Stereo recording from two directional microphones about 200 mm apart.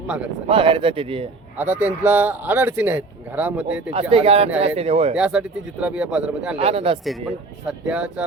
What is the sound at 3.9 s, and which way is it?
Speech, 30° right (ahead or behind).